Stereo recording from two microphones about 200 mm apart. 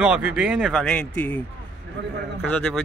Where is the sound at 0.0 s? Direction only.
5° right (ahead or behind).